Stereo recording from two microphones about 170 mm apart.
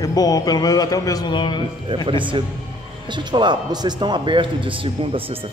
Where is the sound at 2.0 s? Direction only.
30° right (ahead or behind).